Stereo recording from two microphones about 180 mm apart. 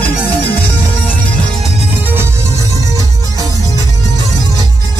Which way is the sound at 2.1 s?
15° right (ahead or behind).